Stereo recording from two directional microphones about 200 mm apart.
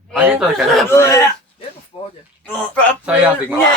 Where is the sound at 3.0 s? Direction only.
10° right (ahead or behind).